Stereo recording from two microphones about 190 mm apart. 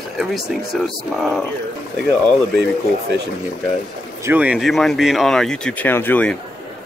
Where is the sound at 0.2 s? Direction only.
Centre (ahead or behind).